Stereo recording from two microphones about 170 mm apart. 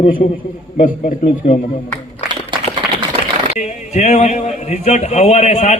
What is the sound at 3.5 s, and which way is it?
A man's voice, 45° left (ahead or behind).